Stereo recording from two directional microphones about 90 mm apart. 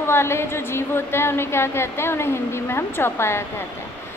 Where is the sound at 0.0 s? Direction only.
30° left (ahead or behind).